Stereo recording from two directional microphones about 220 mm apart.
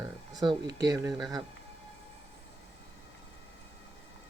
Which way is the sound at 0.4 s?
20° right (ahead or behind).